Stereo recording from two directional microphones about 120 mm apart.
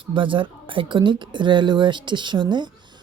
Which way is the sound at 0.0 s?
45° right (ahead or behind).